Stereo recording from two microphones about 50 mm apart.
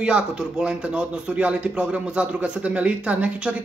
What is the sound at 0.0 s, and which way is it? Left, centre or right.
A man's voice, centre.